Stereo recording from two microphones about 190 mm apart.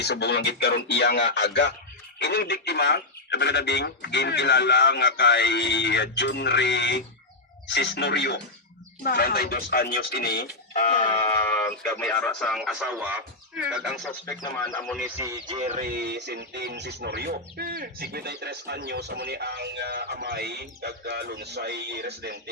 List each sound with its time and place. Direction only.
0.0 s speech: 60° left (ahead or behind)
11.2 s speech: 15° left (ahead or behind); by 14.1 s centre (ahead or behind)
14.3 s speech: 10° left (ahead or behind)
15.0 s speech: 15° right (ahead or behind)
15.4 s a sound: 35° right (ahead or behind)
15.9 s speech: 55° right (ahead or behind)